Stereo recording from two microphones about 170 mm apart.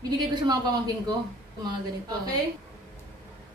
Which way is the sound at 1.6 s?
25° right (ahead or behind).